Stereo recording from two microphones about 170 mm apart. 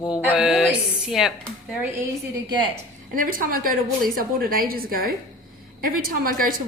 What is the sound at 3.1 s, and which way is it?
A woman's voice, 55° right (ahead or behind).